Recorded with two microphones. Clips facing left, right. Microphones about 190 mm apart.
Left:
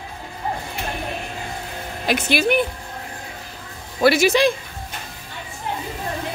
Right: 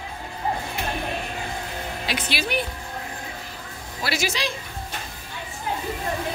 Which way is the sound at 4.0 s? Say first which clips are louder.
Left 12 dB; 55° left (ahead or behind).